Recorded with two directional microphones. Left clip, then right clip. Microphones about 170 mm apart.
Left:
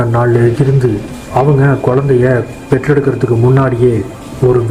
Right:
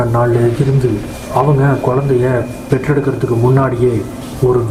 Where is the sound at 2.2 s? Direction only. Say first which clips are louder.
Left 3 dB; 20° left (ahead or behind).